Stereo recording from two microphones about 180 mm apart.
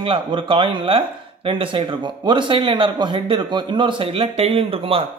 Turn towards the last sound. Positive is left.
turn(degrees=-30)  # may be behind; listen again after turning